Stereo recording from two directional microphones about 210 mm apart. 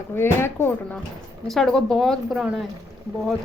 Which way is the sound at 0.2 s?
10° left (ahead or behind).